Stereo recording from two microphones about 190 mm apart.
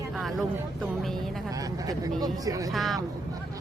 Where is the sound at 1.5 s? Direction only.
20° right (ahead or behind).